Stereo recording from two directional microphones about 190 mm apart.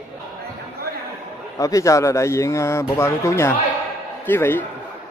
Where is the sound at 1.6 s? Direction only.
15° left (ahead or behind).